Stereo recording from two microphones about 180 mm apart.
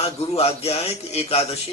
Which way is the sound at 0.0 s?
35° left (ahead or behind).